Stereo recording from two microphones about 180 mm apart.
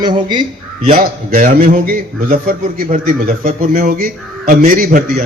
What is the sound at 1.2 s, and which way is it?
A man's voice, 45° right (ahead or behind).